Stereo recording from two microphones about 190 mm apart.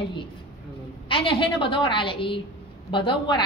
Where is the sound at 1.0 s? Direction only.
25° left (ahead or behind).